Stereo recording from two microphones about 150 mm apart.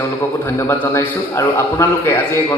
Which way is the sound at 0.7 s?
15° left (ahead or behind).